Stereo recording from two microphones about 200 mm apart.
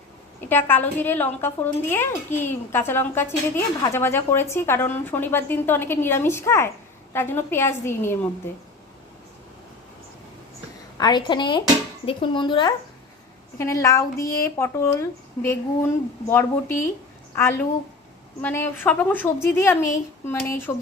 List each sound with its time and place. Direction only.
0.4 s speech: 10° left (ahead or behind)
10.9 s a woman's voice: 20° left (ahead or behind)